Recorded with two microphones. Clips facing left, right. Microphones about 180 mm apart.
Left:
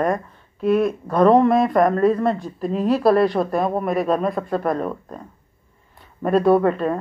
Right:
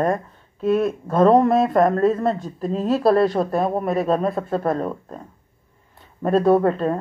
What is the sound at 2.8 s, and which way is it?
A woman's voice, 30° right (ahead or behind).